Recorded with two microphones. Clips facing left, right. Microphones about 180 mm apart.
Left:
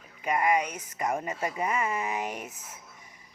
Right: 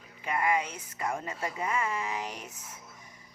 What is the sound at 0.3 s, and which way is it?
Speech, 20° left (ahead or behind).